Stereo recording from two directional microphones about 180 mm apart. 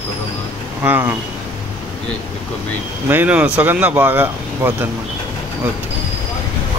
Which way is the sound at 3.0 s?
10° right (ahead or behind).